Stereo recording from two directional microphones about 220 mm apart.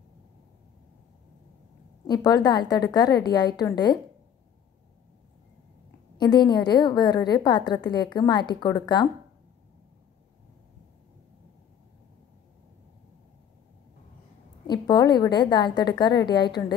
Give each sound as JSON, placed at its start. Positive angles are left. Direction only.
{"t": 2.0, "sound": "a woman's voice", "side_deg": 15}
{"t": 6.1, "sound": "a woman's voice", "side_deg": 20}
{"t": 14.7, "sound": "a woman's voice", "side_deg": 20}